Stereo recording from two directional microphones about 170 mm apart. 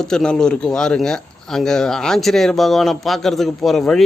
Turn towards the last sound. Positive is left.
turn(degrees=0)  # may be behind; listen again after turning